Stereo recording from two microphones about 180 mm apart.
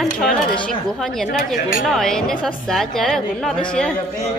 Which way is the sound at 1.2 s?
40° left (ahead or behind).